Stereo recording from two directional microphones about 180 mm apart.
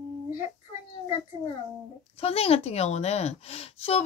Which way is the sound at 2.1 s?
35° left (ahead or behind).